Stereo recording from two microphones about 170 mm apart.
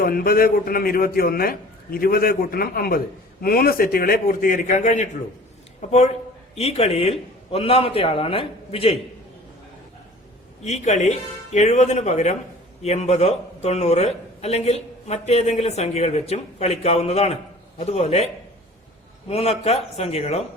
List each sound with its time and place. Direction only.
0.0 s a man's voice: 60° left (ahead or behind); by 9.0 s 35° left (ahead or behind)
10.6 s a man's voice: 40° left (ahead or behind)
19.3 s a man's voice: 35° left (ahead or behind)